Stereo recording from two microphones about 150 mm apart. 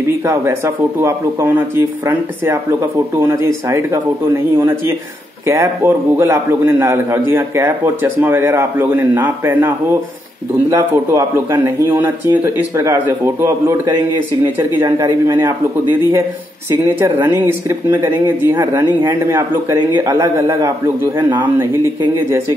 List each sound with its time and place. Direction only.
0.2 s a man's voice: 15° right (ahead or behind)